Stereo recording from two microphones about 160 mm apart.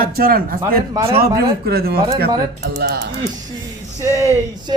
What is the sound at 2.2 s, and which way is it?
Speech, 90° right.